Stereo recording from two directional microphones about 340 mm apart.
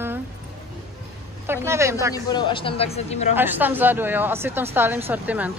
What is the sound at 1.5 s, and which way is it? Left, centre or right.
Speech, centre.